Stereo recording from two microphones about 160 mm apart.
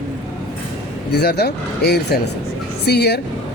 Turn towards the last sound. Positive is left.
turn(degrees=90)